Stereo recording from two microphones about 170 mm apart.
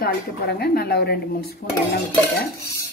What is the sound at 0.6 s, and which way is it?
Speech, 70° left (ahead or behind).